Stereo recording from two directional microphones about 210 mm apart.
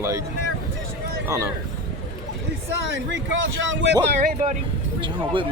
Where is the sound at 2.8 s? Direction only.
60° right (ahead or behind).